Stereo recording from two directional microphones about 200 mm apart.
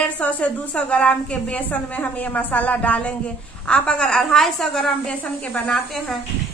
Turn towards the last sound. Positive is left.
turn(degrees=5)  # may be behind; listen again after turning